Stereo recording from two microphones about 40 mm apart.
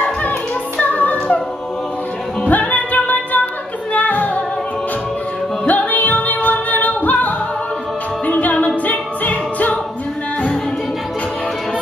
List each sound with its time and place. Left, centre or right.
0.7 s music: left
2.4 s music: left
5.7 s music: left